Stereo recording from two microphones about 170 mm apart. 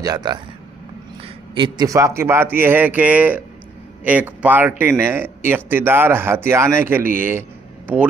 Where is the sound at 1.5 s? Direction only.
25° right (ahead or behind).